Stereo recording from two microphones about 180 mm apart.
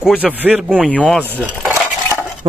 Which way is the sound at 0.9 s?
5° left (ahead or behind).